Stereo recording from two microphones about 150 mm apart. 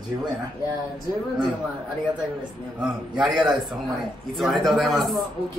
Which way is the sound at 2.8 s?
5° right (ahead or behind).